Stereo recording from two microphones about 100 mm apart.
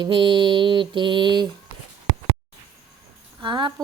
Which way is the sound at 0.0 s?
55° right (ahead or behind).